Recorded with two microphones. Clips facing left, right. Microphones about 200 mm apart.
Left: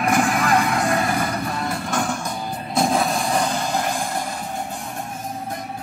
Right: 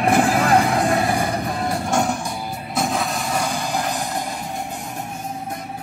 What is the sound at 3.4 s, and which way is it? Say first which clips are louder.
Music: left 1 dB; 15° right (ahead or behind).